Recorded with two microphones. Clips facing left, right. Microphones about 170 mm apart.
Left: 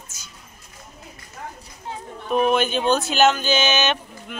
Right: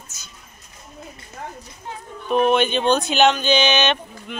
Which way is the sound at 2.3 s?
5° left (ahead or behind).